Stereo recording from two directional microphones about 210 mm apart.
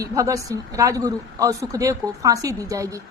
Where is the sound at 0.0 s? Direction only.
15° right (ahead or behind).